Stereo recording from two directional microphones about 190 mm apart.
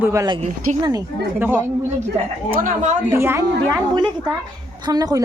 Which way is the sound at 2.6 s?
40° right (ahead or behind).